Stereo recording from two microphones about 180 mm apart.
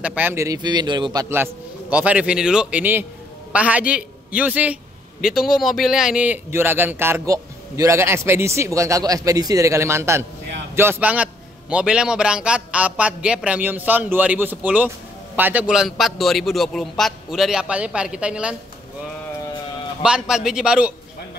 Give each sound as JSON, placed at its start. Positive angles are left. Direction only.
{"t": 0.0, "sound": "speech", "side_deg": -10}
{"t": 1.3, "sound": "a man's voice", "side_deg": -10}
{"t": 20.0, "sound": "a man's voice", "side_deg": -5}